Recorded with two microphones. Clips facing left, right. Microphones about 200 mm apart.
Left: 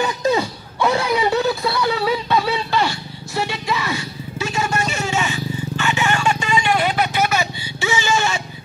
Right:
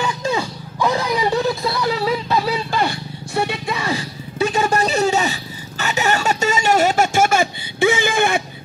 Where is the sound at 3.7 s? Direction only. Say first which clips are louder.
Right 1 dB; 30° right (ahead or behind).